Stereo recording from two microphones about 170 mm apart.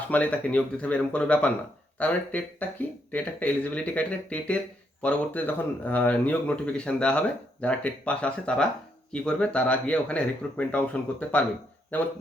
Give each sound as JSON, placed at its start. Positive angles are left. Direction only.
{"t": 0.1, "sound": "speech", "side_deg": 10}